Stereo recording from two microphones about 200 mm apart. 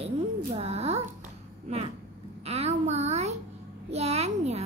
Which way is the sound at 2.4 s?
30° right (ahead or behind).